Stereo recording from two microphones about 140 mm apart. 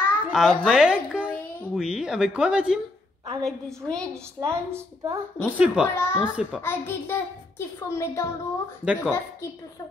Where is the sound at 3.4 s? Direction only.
5° left (ahead or behind).